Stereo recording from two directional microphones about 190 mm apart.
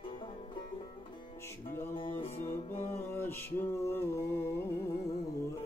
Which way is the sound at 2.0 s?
25° left (ahead or behind).